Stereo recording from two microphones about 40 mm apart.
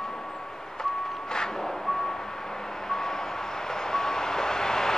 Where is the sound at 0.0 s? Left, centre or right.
Centre.